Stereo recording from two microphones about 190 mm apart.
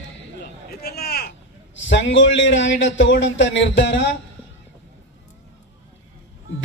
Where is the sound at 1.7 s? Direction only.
70° left (ahead or behind).